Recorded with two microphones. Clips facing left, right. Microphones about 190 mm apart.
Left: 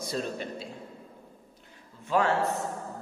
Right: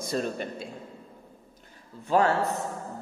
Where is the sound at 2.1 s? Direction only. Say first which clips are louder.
Right 3 dB; 35° right (ahead or behind).